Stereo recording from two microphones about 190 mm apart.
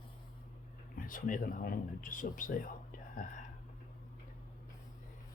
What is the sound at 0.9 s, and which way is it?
Speech, 45° left (ahead or behind).